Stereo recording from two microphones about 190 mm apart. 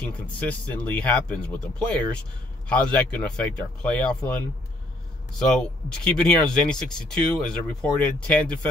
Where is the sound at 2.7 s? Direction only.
5° left (ahead or behind).